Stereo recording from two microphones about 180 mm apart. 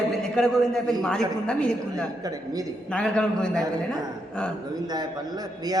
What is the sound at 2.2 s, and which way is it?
Speech, 20° right (ahead or behind).